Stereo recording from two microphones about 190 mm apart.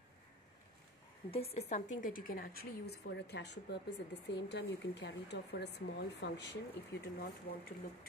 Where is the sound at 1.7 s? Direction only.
45° left (ahead or behind).